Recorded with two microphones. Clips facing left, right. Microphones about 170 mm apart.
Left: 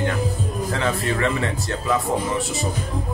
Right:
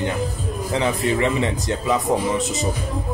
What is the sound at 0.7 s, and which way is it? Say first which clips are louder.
Speech: right 4 dB; 15° right (ahead or behind).